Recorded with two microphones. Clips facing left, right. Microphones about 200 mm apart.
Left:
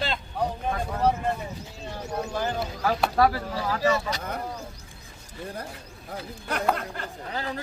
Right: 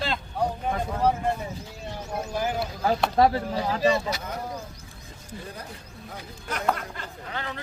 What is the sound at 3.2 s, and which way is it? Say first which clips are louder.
Speech: right 3 dB; 25° right (ahead or behind).